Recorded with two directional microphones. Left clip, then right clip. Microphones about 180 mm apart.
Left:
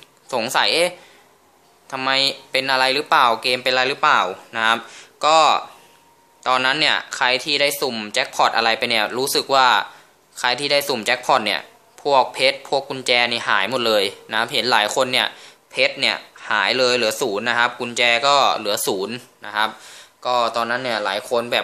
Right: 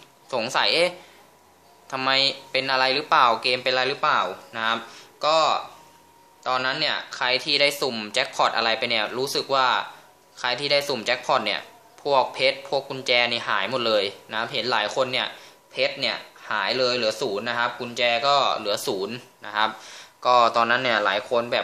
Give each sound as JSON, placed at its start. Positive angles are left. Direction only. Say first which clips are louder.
{"t": 0.3, "sound": "speech", "louder": "left 4 dB", "side_deg": 30}
{"t": 19.8, "sound": "speech", "louder": "right 1 dB", "side_deg": -5}